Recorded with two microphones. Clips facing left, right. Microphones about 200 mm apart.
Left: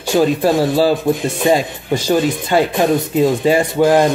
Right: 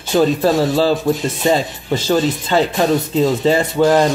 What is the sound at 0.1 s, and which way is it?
Speech, 10° left (ahead or behind).